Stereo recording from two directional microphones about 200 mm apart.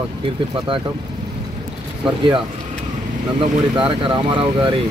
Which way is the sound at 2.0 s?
25° right (ahead or behind).